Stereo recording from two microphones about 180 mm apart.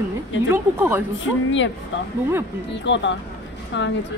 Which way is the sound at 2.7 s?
90° left.